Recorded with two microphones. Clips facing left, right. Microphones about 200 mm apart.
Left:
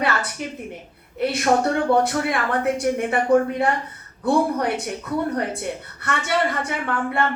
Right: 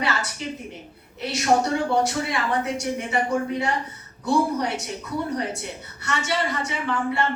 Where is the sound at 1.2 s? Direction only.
55° left (ahead or behind).